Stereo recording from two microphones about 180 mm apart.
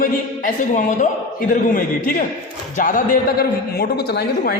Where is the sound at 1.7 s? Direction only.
50° left (ahead or behind).